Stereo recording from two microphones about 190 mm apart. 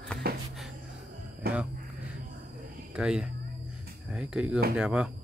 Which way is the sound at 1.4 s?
50° right (ahead or behind).